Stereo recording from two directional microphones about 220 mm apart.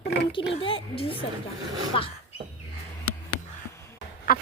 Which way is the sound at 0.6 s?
25° left (ahead or behind).